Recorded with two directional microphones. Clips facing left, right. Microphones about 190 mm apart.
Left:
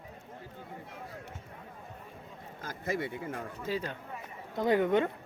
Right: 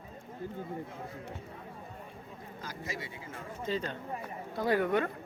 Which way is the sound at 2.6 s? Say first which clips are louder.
Left 7 dB; 55° left (ahead or behind).